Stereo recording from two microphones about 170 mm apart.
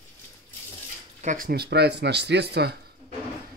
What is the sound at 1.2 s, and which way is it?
Speech, 55° right (ahead or behind).